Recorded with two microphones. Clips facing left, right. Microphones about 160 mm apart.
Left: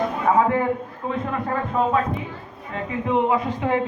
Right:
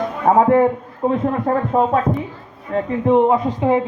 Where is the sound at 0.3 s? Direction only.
50° right (ahead or behind).